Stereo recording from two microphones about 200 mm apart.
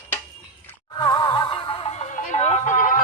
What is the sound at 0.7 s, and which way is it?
Music, 20° left (ahead or behind).